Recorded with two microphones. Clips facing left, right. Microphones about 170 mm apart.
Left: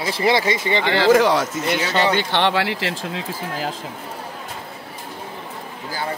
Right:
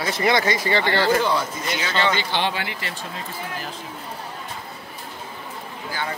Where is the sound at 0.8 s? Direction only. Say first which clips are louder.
Left 7 dB; 90° left.